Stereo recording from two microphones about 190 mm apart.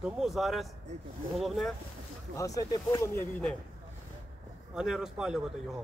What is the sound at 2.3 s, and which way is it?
Speech, 20° left (ahead or behind).